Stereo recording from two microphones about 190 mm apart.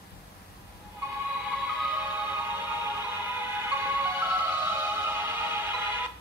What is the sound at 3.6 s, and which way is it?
Music, 10° right (ahead or behind).